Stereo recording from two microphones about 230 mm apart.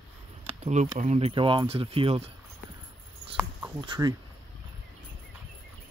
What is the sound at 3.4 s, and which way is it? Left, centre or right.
Speech, centre.